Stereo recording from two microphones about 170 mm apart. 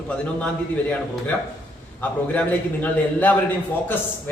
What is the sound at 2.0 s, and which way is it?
A man's voice, 10° left (ahead or behind).